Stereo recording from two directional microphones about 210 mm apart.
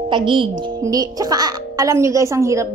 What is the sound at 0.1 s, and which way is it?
A child's voice, 25° right (ahead or behind).